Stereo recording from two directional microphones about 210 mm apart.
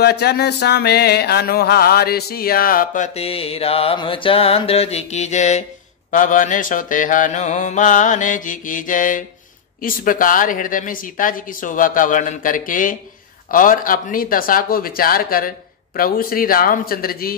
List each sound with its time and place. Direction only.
0.0 s music: 50° left (ahead or behind); by 5.6 s 35° left (ahead or behind)
6.1 s speech: 40° left (ahead or behind)
13.5 s music: 40° left (ahead or behind)